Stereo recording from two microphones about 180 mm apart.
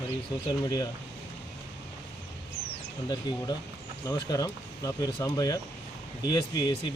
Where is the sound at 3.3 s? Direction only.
20° left (ahead or behind).